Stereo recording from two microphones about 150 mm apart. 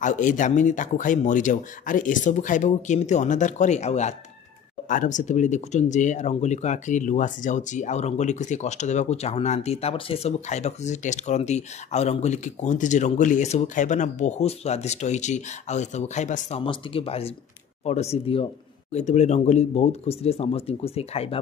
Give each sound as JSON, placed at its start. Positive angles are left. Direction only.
{"t": 0.0, "sound": "speech", "side_deg": 55}